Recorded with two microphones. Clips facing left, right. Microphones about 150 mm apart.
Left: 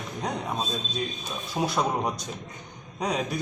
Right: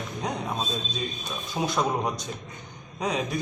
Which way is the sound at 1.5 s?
10° left (ahead or behind).